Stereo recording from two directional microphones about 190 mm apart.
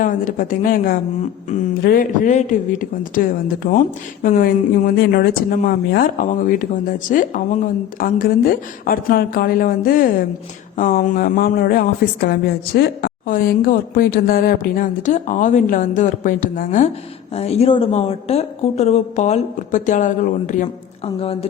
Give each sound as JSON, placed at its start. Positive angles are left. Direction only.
{"t": 0.0, "sound": "a woman's voice", "side_deg": 45}
{"t": 17.3, "sound": "speech", "side_deg": 35}